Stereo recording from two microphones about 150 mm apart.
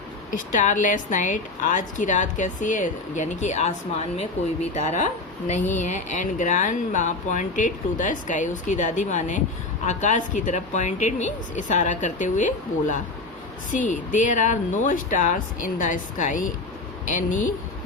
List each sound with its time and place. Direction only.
0.3 s a woman's voice: 60° left (ahead or behind)